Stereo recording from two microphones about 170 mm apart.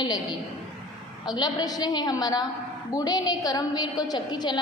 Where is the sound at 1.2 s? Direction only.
25° left (ahead or behind).